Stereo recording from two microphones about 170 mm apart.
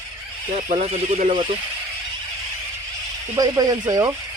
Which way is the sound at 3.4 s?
20° right (ahead or behind).